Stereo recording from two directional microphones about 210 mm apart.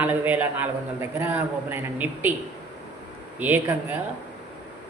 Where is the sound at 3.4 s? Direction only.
10° right (ahead or behind).